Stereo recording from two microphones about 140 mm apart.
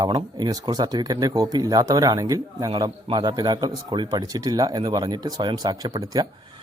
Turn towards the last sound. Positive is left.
turn(degrees=-25)  # may be behind; listen again after turning